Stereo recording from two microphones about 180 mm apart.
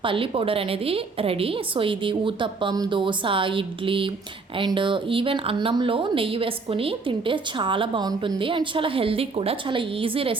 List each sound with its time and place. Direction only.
0.0 s speech: 30° right (ahead or behind)